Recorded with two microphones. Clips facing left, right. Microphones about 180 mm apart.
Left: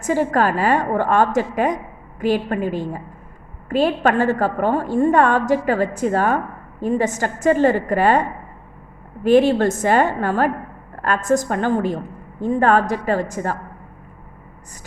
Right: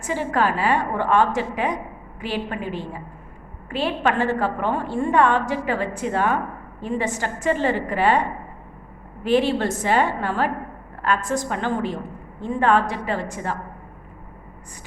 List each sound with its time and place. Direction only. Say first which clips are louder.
0.0 s a woman's voice: left 4 dB; 45° left (ahead or behind)